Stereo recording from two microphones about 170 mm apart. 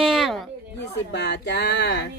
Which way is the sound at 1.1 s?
85° left.